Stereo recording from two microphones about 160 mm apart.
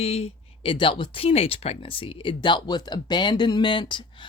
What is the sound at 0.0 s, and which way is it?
Speech, 40° left (ahead or behind).